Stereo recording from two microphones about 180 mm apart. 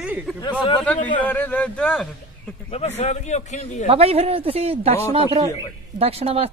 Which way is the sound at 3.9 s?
35° right (ahead or behind).